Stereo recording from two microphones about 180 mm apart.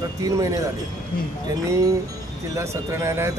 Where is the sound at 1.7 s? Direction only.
20° right (ahead or behind).